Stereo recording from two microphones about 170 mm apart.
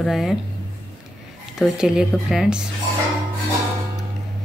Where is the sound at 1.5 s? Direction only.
5° right (ahead or behind).